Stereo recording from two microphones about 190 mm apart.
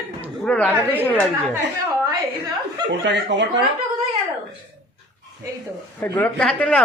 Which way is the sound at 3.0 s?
65° right (ahead or behind).